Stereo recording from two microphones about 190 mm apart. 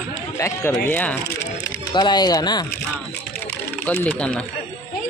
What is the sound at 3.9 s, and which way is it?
Speech, 10° left (ahead or behind).